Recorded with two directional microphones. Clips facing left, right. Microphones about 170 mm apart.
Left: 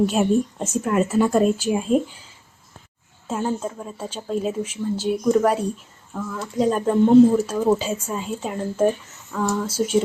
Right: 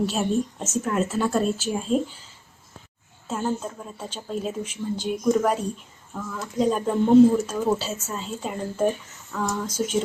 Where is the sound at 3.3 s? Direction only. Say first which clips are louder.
Left 2 dB; 5° left (ahead or behind).